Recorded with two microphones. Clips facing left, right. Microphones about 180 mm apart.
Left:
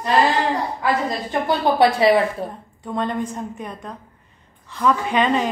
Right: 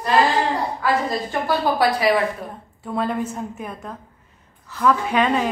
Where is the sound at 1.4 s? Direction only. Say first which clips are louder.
Left 3 dB; 25° left (ahead or behind).